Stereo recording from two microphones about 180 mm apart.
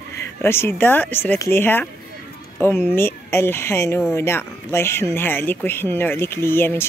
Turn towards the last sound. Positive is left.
turn(degrees=10)  # may be behind; listen again after turning